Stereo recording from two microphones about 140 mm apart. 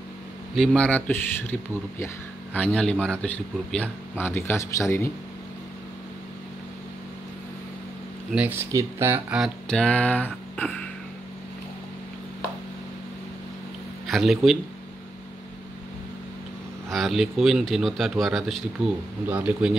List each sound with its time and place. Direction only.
0.6 s speech: 10° left (ahead or behind)
8.4 s speech: 15° right (ahead or behind)
9.4 s speech: 5° left (ahead or behind)
14.0 s speech: centre (ahead or behind)
16.9 s speech: centre (ahead or behind)
19.2 s speech: 10° right (ahead or behind)